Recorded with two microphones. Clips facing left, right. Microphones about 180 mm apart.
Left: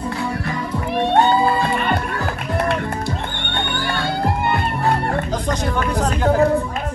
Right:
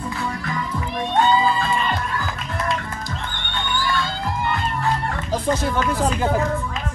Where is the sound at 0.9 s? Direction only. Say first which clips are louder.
Left 3 dB; 65° left (ahead or behind).